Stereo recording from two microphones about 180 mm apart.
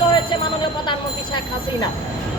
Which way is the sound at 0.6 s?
25° left (ahead or behind).